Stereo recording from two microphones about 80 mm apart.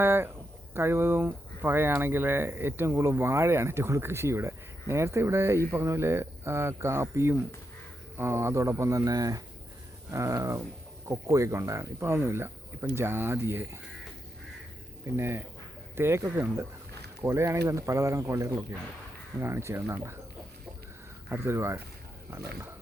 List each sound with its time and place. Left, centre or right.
0.0 s speech: right
15.0 s speech: right
21.2 s speech: right